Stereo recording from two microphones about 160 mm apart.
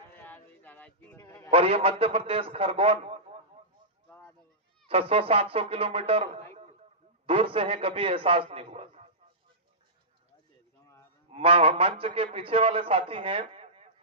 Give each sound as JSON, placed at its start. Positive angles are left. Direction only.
{"t": 0.2, "sound": "a sound", "side_deg": 10}
{"t": 1.5, "sound": "a man's voice", "side_deg": -35}
{"t": 4.9, "sound": "a man's voice", "side_deg": -35}
{"t": 7.3, "sound": "a man's voice", "side_deg": -35}
{"t": 11.3, "sound": "a man's voice", "side_deg": -35}